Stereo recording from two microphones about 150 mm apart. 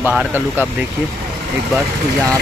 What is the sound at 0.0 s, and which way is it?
Speech, 10° right (ahead or behind).